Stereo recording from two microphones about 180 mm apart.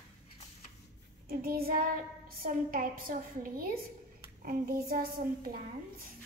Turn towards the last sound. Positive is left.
turn(degrees=-55)  # may be behind; listen again after turning